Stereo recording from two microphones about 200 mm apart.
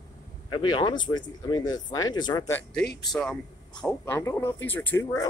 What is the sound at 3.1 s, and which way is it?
Speech, centre (ahead or behind).